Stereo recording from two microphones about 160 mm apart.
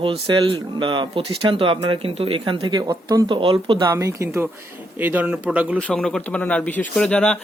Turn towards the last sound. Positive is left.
turn(degrees=5)  # may be behind; listen again after turning